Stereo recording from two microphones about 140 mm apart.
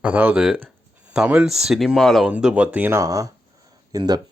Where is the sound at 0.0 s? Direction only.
10° right (ahead or behind).